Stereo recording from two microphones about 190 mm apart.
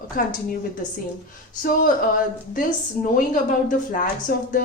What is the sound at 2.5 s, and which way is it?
Speech, 45° left (ahead or behind).